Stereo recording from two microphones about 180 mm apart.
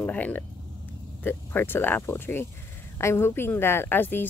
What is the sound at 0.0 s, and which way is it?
Speech, 10° left (ahead or behind).